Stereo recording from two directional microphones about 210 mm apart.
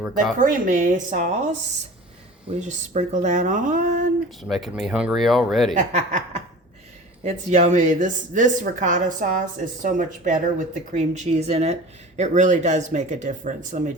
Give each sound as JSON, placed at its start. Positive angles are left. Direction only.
{"t": 0.0, "sound": "speech", "side_deg": 0}
{"t": 0.3, "sound": "a woman's voice", "side_deg": -40}
{"t": 2.6, "sound": "a woman's voice", "side_deg": -35}
{"t": 4.4, "sound": "speech", "side_deg": 0}
{"t": 5.7, "sound": "a woman's voice", "side_deg": -40}